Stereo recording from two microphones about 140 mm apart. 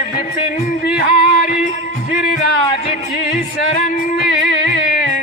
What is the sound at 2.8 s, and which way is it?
Music, 55° left (ahead or behind).